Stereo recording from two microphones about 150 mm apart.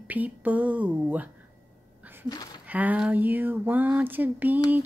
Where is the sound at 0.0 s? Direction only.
10° right (ahead or behind).